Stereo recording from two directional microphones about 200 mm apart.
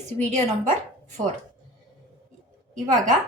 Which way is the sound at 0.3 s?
35° right (ahead or behind).